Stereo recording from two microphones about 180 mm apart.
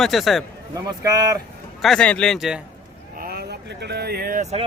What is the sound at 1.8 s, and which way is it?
Speech, 5° left (ahead or behind).